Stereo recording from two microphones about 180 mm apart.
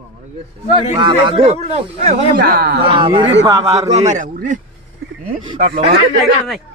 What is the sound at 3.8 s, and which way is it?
Speech, 40° right (ahead or behind).